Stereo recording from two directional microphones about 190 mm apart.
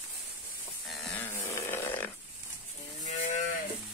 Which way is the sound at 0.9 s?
5° left (ahead or behind).